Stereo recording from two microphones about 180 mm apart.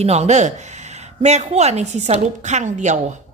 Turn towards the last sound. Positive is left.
turn(degrees=-45)  # may be behind; listen again after turning